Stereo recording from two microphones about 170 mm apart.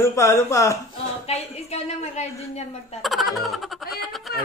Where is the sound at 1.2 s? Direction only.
40° left (ahead or behind).